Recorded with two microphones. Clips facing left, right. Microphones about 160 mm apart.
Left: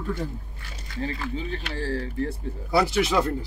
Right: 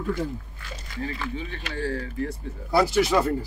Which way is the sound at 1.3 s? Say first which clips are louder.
Left 2 dB; 35° left (ahead or behind).